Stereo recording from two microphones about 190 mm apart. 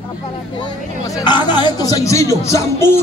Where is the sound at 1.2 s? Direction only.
25° left (ahead or behind).